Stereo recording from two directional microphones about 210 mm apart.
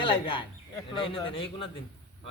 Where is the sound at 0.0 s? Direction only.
25° left (ahead or behind).